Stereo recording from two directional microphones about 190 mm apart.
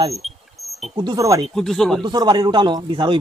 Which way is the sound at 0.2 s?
Centre (ahead or behind).